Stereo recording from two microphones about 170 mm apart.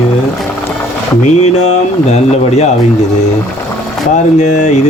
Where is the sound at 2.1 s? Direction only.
40° left (ahead or behind).